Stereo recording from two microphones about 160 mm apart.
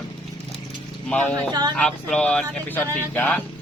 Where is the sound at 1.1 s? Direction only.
5° left (ahead or behind).